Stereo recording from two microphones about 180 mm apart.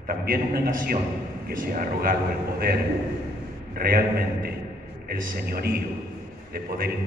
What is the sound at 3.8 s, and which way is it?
A man's voice, 55° right (ahead or behind).